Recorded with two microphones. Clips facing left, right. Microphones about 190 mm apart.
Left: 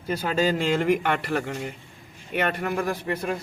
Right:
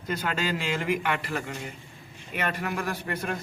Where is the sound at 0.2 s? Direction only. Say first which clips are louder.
Left 10 dB; 40° left (ahead or behind).